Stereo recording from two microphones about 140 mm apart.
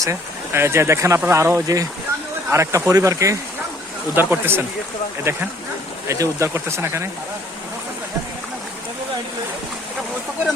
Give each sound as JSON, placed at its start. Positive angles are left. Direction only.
{"t": 0.0, "sound": "speech", "side_deg": -20}